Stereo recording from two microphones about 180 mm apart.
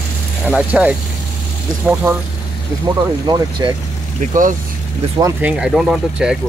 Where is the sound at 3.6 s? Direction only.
20° right (ahead or behind).